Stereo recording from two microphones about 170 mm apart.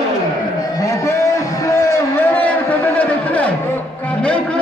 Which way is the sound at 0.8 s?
15° left (ahead or behind).